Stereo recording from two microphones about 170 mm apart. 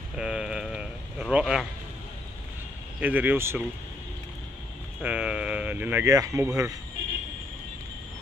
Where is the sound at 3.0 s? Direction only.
10° right (ahead or behind).